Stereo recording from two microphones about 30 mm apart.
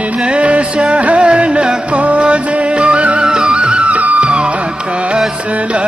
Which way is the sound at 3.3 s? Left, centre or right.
Right.